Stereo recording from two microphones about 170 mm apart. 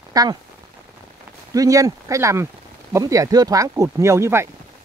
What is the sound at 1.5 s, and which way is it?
Speech, 20° right (ahead or behind).